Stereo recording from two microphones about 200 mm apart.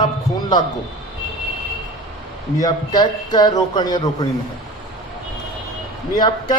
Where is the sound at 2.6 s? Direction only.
20° left (ahead or behind).